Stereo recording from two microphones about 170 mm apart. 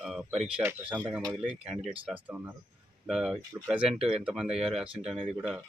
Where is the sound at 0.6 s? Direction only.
10° right (ahead or behind).